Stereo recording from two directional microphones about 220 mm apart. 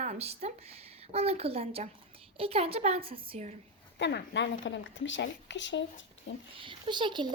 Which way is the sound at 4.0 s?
50° left (ahead or behind).